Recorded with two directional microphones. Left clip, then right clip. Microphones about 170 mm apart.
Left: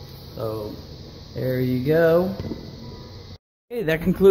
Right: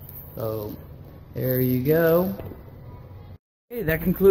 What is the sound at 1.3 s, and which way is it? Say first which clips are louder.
Speech: even; 20° right (ahead or behind).